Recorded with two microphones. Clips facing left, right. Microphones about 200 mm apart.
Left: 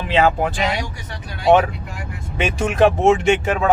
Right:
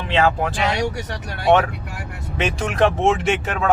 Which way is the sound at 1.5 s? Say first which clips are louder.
Left 2 dB; centre (ahead or behind).